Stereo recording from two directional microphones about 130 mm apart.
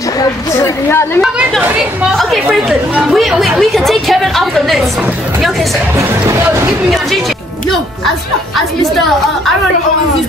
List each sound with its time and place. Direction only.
0.8 s speech: 20° left (ahead or behind)
2.4 s speech: 10° right (ahead or behind)
3.2 s a woman's voice: centre (ahead or behind)